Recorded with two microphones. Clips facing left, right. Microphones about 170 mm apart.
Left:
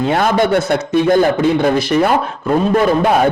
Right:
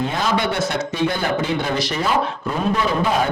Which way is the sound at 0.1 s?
55° left (ahead or behind).